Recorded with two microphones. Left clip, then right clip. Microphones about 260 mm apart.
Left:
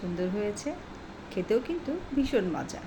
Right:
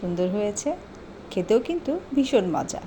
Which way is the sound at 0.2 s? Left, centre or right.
Right.